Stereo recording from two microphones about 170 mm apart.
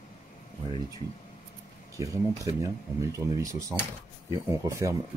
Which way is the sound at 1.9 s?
20° right (ahead or behind).